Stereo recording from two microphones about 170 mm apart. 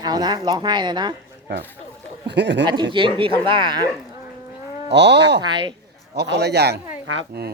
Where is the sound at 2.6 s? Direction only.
25° right (ahead or behind).